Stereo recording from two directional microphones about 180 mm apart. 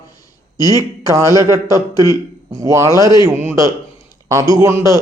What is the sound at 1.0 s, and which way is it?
A man's voice, 15° right (ahead or behind).